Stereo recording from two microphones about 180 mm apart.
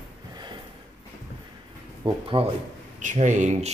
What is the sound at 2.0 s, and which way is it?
Speech, 30° right (ahead or behind).